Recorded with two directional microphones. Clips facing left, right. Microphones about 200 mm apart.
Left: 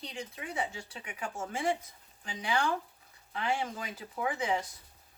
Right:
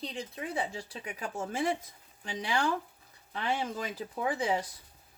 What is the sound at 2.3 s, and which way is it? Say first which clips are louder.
Speech: right 1 dB; 35° right (ahead or behind).